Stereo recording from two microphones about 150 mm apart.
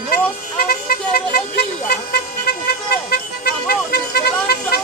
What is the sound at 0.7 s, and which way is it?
Vehicle, 85° left.